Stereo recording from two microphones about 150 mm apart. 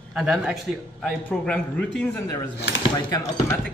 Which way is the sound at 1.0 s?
10° left (ahead or behind).